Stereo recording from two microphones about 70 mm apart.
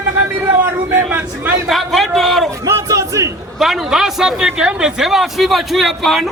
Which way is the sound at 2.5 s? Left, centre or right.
Right.